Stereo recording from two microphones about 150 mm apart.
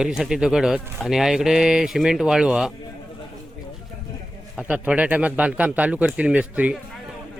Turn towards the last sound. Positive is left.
turn(degrees=-10)  # may be behind; listen again after turning